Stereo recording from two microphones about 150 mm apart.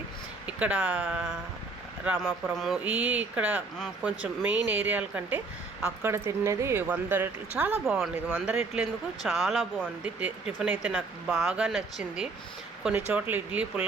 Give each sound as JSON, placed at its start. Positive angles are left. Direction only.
{"t": 0.4, "sound": "speech", "side_deg": -10}
{"t": 2.6, "sound": "speech", "side_deg": -5}
{"t": 9.2, "sound": "speech", "side_deg": 0}
{"t": 10.0, "sound": "speech", "side_deg": -10}